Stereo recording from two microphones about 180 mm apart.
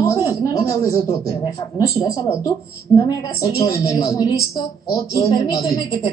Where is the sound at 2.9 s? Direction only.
20° left (ahead or behind).